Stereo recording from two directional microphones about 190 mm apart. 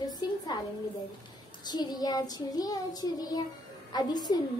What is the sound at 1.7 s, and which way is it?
A woman's voice, 20° left (ahead or behind).